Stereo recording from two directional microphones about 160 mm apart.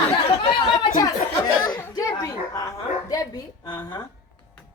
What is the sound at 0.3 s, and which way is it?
Speech, 30° left (ahead or behind).